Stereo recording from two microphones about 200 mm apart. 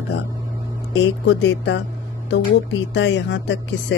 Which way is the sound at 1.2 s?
60° left (ahead or behind).